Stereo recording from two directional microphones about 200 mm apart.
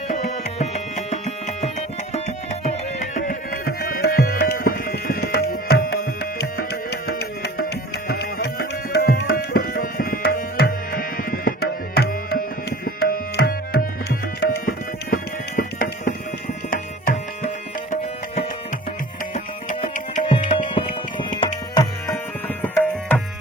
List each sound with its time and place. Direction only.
0.1 s tabla: 35° left (ahead or behind)
1.2 s music: 30° left (ahead or behind)
3.2 s tabla: 45° left (ahead or behind)
6.4 s music: 55° left (ahead or behind)
16.6 s tabla: 40° left (ahead or behind)
19.3 s tabla: 35° left (ahead or behind); by 22.2 s 20° left (ahead or behind)
22.6 s tabla: 10° left (ahead or behind)